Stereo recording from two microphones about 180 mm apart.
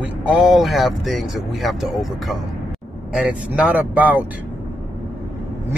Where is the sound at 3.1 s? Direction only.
5° right (ahead or behind).